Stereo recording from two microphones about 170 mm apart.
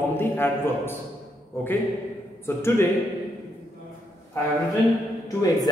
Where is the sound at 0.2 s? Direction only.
15° left (ahead or behind).